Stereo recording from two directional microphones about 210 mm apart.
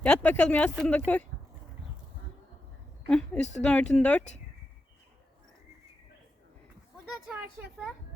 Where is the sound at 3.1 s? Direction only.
5° left (ahead or behind).